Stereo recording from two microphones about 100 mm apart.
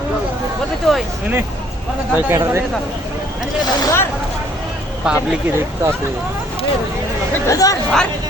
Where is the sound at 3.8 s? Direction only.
30° left (ahead or behind).